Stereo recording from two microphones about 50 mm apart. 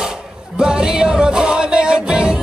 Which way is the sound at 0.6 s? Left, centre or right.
Centre.